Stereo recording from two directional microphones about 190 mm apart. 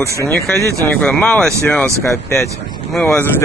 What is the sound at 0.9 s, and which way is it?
Speech, 5° left (ahead or behind).